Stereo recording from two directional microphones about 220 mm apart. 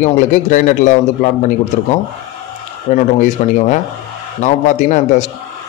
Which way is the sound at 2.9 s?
35° left (ahead or behind).